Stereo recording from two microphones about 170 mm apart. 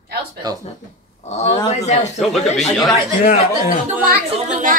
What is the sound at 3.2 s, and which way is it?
Speech, 55° left (ahead or behind).